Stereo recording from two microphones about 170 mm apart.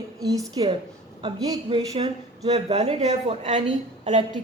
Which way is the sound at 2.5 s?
40° right (ahead or behind).